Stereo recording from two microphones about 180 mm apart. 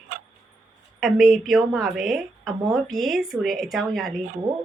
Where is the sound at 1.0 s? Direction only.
Centre (ahead or behind).